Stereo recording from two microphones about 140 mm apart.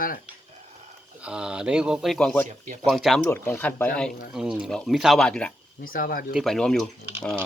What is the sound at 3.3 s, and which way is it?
Speech, 15° left (ahead or behind).